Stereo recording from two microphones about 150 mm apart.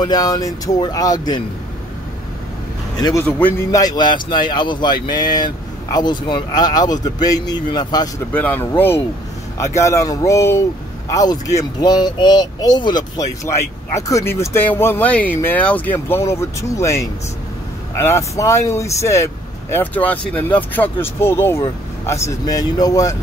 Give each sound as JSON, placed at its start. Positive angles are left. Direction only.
{"t": 0.0, "sound": "speech", "side_deg": 25}
{"t": 3.0, "sound": "speech", "side_deg": 25}
{"t": 3.3, "sound": "speech", "side_deg": 10}
{"t": 3.7, "sound": "speech", "side_deg": 25}
{"t": 8.3, "sound": "speech", "side_deg": 10}